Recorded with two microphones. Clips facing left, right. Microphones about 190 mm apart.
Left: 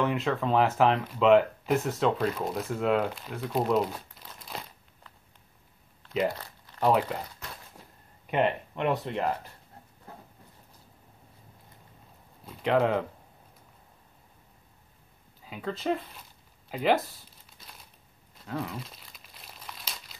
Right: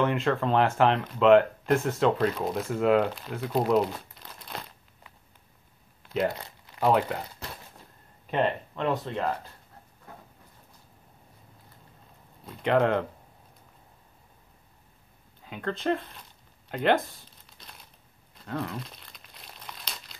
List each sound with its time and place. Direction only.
0.0 s speech: centre (ahead or behind)
6.3 s crumpling: 15° right (ahead or behind)
6.9 s speech: centre (ahead or behind)
8.3 s speech: 15° left (ahead or behind)
12.4 s speech: centre (ahead or behind)
15.4 s speech: 5° left (ahead or behind)
17.6 s crumpling: 5° left (ahead or behind)